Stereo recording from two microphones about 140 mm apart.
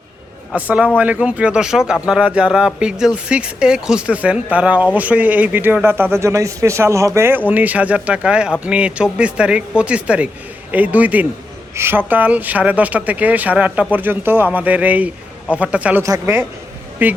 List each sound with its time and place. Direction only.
0.5 s speech: 10° right (ahead or behind)